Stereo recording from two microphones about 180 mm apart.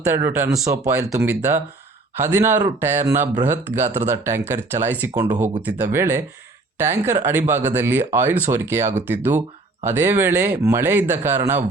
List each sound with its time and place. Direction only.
0.0 s speech: 15° right (ahead or behind)